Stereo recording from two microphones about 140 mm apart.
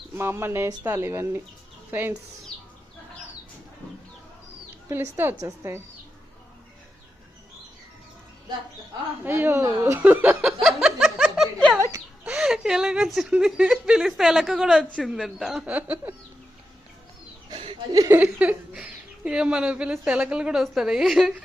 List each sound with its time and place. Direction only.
0.1 s a woman's voice: 15° right (ahead or behind)
4.9 s a woman's voice: 15° right (ahead or behind)
9.2 s a woman's voice: 15° right (ahead or behind)
10.4 s a sound: centre (ahead or behind)
11.8 s a sound: 20° right (ahead or behind)
12.2 s a woman's voice: 5° right (ahead or behind)
17.5 s chuckle: 40° right (ahead or behind)
17.9 s a woman's voice: 25° right (ahead or behind)
18.2 s a woman's voice: 10° right (ahead or behind)